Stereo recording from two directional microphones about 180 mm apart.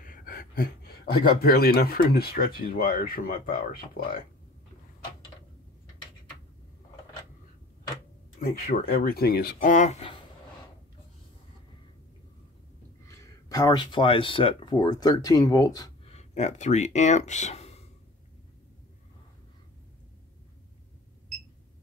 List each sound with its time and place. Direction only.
0.0 s a sound: 50° left (ahead or behind)
1.4 s speech: 60° left (ahead or behind)
8.4 s speech: 50° left (ahead or behind)
13.1 s speech: 20° left (ahead or behind)
16.1 s speech: 40° left (ahead or behind)